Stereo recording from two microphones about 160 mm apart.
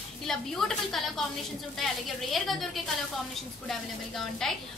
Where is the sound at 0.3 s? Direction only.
Centre (ahead or behind).